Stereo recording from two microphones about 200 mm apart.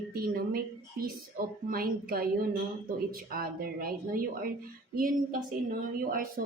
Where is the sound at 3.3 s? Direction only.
45° right (ahead or behind).